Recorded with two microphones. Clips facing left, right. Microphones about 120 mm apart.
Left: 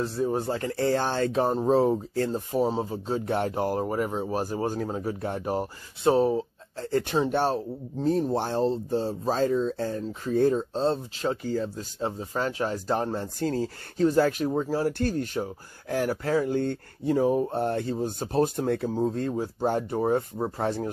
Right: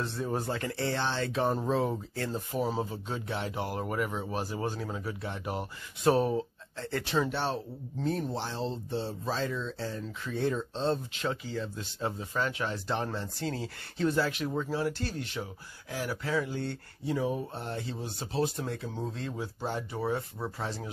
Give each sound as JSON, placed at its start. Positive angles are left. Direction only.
{"t": 0.0, "sound": "speech", "side_deg": 35}
{"t": 8.4, "sound": "speech", "side_deg": 50}
{"t": 14.9, "sound": "speech", "side_deg": 50}
{"t": 18.9, "sound": "speech", "side_deg": 40}